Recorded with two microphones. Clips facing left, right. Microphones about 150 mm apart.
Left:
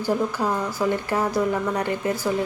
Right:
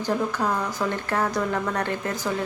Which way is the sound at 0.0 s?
10° left (ahead or behind).